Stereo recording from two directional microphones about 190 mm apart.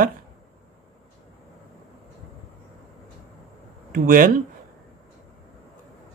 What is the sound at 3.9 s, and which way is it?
Speech, 45° right (ahead or behind).